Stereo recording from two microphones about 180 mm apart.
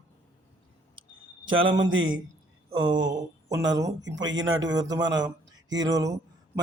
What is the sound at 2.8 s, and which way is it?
Speech, 25° right (ahead or behind).